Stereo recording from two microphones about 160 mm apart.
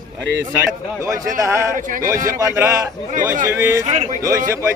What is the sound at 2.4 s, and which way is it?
A man's voice, 20° right (ahead or behind).